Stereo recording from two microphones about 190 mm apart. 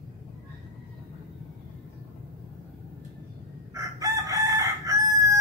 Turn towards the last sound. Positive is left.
turn(degrees=-15)  # may be behind; listen again after turning